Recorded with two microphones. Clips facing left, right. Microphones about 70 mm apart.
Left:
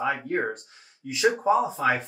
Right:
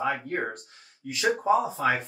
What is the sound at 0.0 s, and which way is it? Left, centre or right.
Speech, centre.